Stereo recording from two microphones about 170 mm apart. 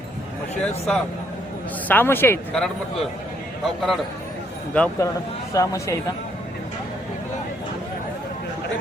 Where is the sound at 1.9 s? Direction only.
10° left (ahead or behind).